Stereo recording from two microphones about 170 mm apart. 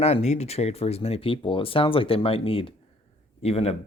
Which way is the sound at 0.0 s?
40° left (ahead or behind).